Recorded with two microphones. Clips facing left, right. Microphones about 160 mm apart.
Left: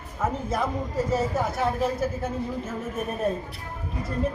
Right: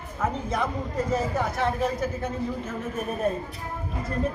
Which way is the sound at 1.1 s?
5° left (ahead or behind).